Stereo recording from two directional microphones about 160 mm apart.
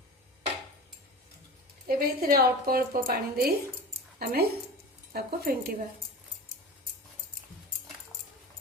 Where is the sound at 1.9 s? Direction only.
65° right (ahead or behind).